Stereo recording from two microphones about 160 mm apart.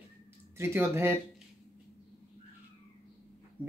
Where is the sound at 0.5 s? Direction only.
15° right (ahead or behind).